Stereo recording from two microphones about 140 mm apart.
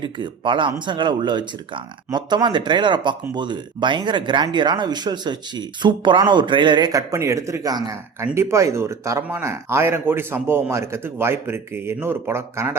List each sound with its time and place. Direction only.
0.0 s speech: 35° right (ahead or behind); by 12.7 s 20° right (ahead or behind)